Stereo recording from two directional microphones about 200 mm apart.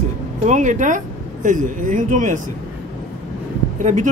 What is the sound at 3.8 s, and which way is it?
Speech, 35° right (ahead or behind).